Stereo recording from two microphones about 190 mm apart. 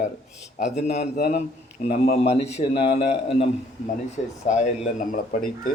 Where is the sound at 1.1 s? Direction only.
50° left (ahead or behind).